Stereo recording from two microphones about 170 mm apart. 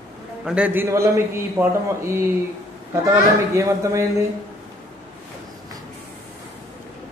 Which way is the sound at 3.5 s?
15° right (ahead or behind).